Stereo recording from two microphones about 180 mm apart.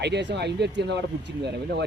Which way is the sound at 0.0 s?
70° right (ahead or behind).